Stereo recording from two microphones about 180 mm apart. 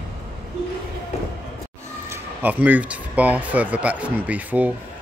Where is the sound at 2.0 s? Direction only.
10° right (ahead or behind).